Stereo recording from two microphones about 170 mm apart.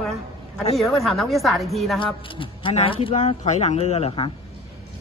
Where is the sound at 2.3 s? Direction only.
30° left (ahead or behind).